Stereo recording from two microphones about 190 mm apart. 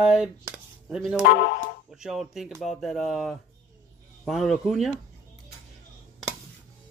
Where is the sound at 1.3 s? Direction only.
65° left (ahead or behind).